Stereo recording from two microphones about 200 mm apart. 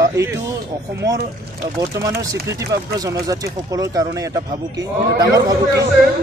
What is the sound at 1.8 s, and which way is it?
A man's voice, 15° right (ahead or behind).